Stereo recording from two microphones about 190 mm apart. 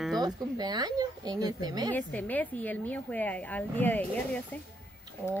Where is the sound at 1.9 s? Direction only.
10° left (ahead or behind).